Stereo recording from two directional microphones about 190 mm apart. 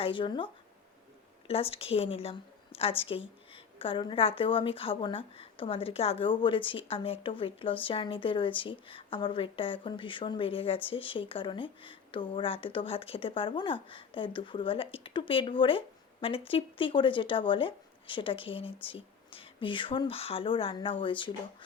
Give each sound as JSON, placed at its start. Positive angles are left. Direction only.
{"t": 0.0, "sound": "a woman's voice", "side_deg": 25}